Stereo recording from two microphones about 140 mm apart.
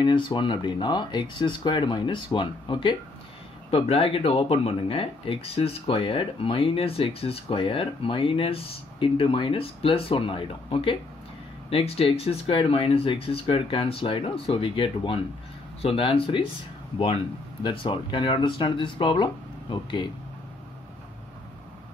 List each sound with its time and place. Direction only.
0.0 s speech: 35° left (ahead or behind)
17.6 s speech: 35° left (ahead or behind)